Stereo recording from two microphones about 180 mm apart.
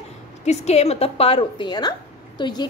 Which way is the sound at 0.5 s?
35° left (ahead or behind).